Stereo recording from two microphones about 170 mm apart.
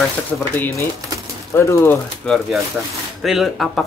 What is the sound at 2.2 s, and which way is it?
Speech, centre (ahead or behind).